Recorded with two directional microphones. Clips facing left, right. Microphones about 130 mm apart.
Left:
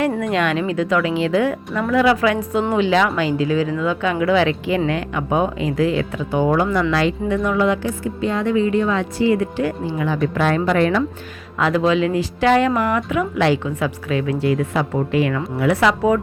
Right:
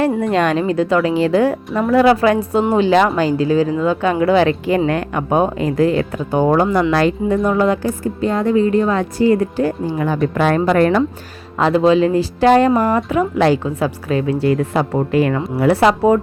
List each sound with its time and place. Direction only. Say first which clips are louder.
0.2 s speech: right 4 dB; 35° right (ahead or behind)
11.5 s speech: right 4 dB; 30° right (ahead or behind)